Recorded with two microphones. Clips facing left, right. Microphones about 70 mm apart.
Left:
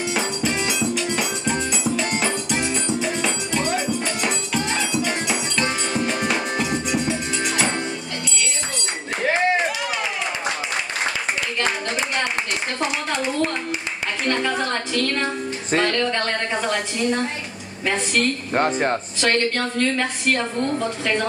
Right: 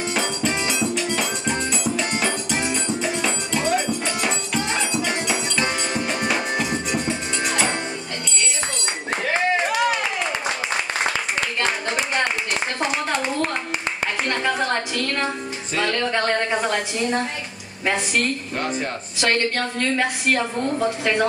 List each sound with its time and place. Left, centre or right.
0.1 s music: centre
14.2 s a sound: centre
17.8 s a woman's voice: centre
18.5 s speech: left
19.1 s a woman's voice: centre